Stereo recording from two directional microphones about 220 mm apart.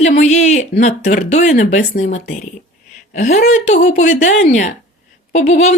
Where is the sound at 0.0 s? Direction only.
30° left (ahead or behind).